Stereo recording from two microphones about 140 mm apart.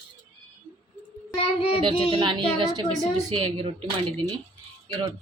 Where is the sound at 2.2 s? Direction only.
35° right (ahead or behind).